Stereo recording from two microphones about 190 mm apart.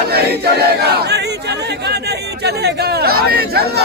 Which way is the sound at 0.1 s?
55° right (ahead or behind).